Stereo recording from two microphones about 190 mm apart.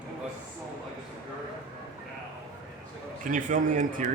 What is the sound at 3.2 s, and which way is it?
Speech, 45° right (ahead or behind).